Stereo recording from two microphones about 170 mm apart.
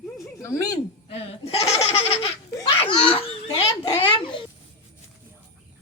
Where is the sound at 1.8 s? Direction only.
35° left (ahead or behind).